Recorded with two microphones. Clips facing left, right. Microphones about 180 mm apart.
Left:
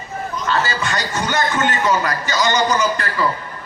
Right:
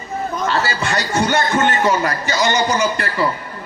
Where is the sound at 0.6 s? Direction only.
30° right (ahead or behind).